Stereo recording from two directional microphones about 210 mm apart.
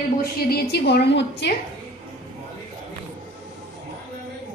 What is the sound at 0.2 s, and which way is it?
A woman's voice, 50° left (ahead or behind).